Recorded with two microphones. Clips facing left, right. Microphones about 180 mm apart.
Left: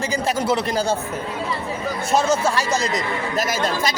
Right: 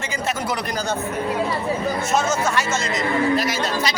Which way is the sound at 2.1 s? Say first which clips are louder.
Left 4 dB; 30° left (ahead or behind).